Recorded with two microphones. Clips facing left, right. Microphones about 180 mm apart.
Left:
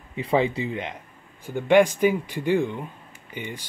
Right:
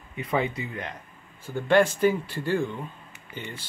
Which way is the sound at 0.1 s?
25° left (ahead or behind).